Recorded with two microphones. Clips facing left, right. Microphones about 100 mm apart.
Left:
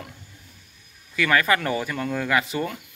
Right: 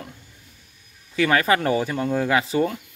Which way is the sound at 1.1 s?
30° right (ahead or behind).